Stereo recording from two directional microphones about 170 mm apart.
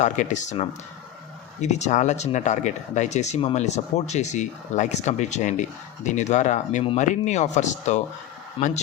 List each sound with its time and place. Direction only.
0.0 s speech: 45° left (ahead or behind)
8.6 s speech: 30° left (ahead or behind)